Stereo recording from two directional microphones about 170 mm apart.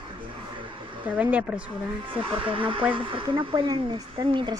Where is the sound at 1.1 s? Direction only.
10° right (ahead or behind).